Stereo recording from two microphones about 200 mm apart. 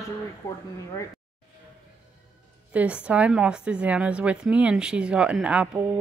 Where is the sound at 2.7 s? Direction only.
5° right (ahead or behind).